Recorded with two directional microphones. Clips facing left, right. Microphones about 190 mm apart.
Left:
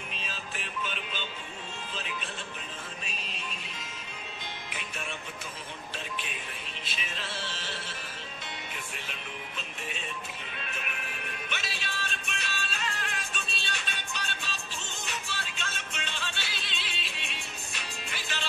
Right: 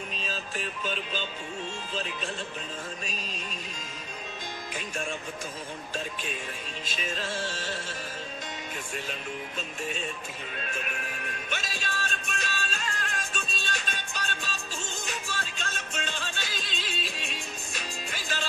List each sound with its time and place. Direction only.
0.3 s music: 40° right (ahead or behind)
4.6 s music: 40° right (ahead or behind)
6.9 s music: 45° right (ahead or behind)
11.4 s music: 45° right (ahead or behind)